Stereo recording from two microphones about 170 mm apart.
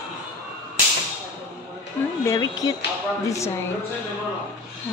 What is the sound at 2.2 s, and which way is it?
Speech, 20° left (ahead or behind).